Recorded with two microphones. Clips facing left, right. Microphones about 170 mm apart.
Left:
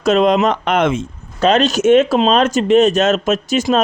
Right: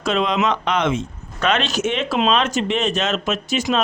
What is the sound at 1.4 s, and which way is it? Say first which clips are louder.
Speech: left 7 dB; 35° left (ahead or behind).